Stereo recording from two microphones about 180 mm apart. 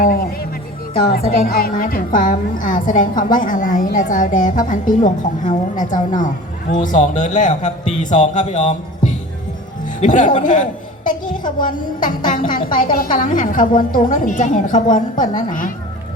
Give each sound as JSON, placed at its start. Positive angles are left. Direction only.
{"t": 0.0, "sound": "music", "side_deg": 55}
{"t": 1.4, "sound": "a woman's voice", "side_deg": 55}